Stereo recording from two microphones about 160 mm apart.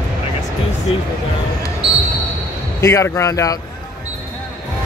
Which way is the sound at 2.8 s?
20° left (ahead or behind).